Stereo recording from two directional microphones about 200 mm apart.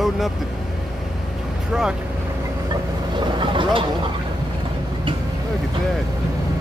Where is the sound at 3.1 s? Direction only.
25° right (ahead or behind).